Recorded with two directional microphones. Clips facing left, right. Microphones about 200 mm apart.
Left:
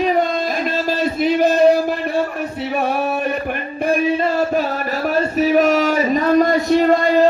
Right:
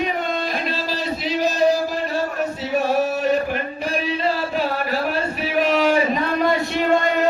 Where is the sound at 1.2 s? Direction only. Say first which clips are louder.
Left 6 dB; 55° left (ahead or behind).